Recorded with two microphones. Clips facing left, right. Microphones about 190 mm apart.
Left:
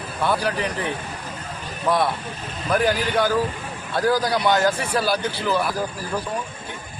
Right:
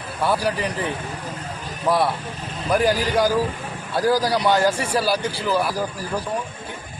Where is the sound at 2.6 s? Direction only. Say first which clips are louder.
Right 1 dB; 10° right (ahead or behind).